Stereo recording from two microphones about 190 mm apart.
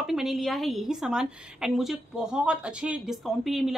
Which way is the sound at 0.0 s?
Centre (ahead or behind).